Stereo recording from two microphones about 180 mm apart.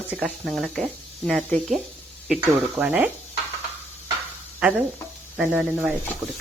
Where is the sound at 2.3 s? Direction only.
10° right (ahead or behind).